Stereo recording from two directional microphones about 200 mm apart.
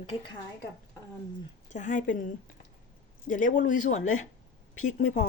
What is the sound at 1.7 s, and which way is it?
Speech, 40° left (ahead or behind).